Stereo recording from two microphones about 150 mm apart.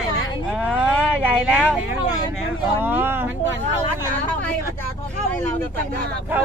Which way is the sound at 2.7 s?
15° right (ahead or behind).